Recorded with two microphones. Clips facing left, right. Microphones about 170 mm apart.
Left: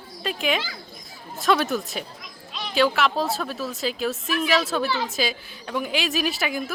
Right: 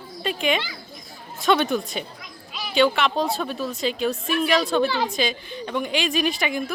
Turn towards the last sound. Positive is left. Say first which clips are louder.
# right 2 dB
turn(degrees=5)  # may be behind; listen again after turning